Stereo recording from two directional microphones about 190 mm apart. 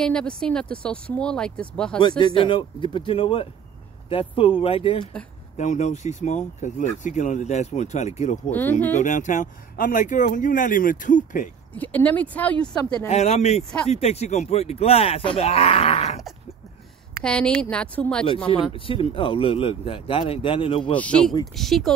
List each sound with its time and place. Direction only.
0.0 s speech: 5° left (ahead or behind)
2.0 s speech: 25° left (ahead or behind)
8.5 s speech: 10° left (ahead or behind)
8.9 s speech: 40° left (ahead or behind)
11.7 s speech: 10° left (ahead or behind)
13.1 s speech: 35° left (ahead or behind)
17.2 s speech: 5° left (ahead or behind)
18.5 s speech: 25° left (ahead or behind)
20.9 s speech: 5° left (ahead or behind)